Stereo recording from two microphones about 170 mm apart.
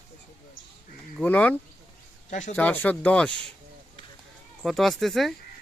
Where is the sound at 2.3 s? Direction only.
45° left (ahead or behind).